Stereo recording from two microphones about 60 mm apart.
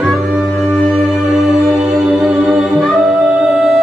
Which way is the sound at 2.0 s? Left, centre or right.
Centre.